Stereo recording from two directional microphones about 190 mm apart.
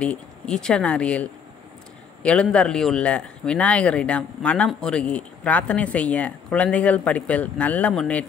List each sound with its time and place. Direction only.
0.0 s speech: 5° left (ahead or behind)